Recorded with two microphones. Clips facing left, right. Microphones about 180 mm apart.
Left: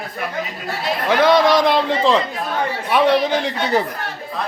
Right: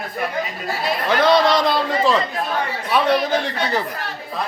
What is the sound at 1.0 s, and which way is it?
A man's voice, 15° left (ahead or behind).